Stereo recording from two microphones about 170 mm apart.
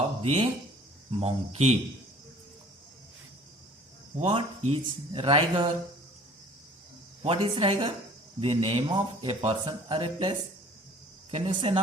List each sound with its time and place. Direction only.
0.0 s a sound: 35° right (ahead or behind)
1.2 s speech: 40° right (ahead or behind)
4.2 s speech: 30° right (ahead or behind)
7.2 s speech: 30° right (ahead or behind)